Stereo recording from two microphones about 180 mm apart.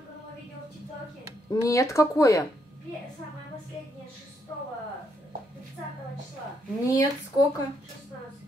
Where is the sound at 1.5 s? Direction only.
15° left (ahead or behind).